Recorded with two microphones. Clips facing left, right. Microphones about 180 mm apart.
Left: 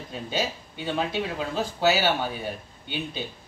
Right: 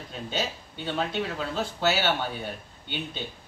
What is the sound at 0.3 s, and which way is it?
Speech, 10° left (ahead or behind).